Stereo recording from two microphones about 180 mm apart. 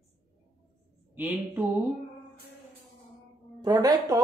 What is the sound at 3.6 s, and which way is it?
Speech, 20° right (ahead or behind).